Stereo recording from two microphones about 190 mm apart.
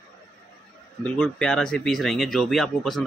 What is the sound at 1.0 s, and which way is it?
Speech, 5° left (ahead or behind).